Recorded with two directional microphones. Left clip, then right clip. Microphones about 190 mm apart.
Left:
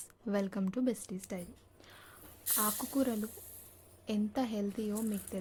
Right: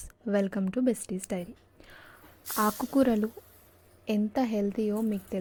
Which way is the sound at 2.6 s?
25° right (ahead or behind).